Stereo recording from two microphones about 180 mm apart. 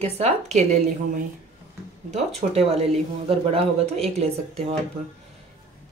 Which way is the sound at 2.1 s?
35° right (ahead or behind).